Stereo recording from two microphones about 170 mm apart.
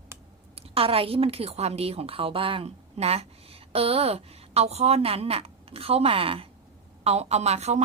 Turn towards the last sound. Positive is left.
turn(degrees=-40)  # may be behind; listen again after turning